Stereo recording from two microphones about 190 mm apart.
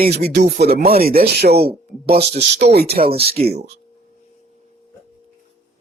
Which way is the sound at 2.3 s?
55° right (ahead or behind).